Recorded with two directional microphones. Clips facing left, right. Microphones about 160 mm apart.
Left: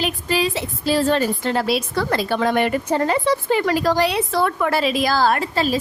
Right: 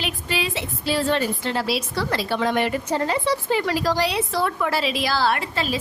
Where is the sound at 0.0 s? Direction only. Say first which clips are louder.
Left 6 dB; 40° left (ahead or behind).